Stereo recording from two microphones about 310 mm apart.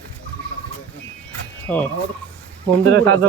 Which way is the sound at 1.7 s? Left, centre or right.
Centre.